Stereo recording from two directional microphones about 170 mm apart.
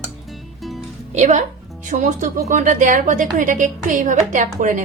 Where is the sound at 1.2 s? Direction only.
45° right (ahead or behind).